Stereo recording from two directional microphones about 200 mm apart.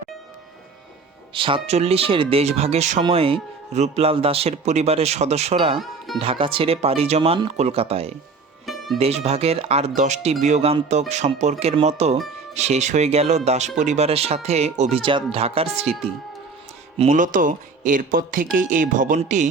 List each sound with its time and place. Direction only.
1.3 s speech: 25° right (ahead or behind)
8.6 s music: centre (ahead or behind)
9.0 s speech: 30° right (ahead or behind)
17.0 s speech: 40° right (ahead or behind)